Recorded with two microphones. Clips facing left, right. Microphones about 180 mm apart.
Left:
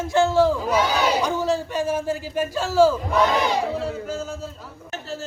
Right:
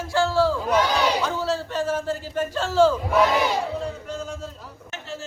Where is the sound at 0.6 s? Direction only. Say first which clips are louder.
Even; 5° left (ahead or behind).